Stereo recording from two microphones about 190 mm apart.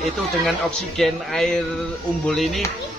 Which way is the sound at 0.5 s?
Centre (ahead or behind).